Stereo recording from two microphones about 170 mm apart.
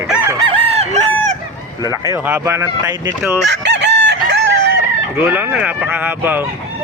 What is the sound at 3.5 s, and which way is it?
Chicken, 90° right.